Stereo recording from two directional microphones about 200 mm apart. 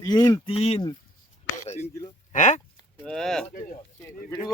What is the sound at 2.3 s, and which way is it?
Speech, 40° left (ahead or behind).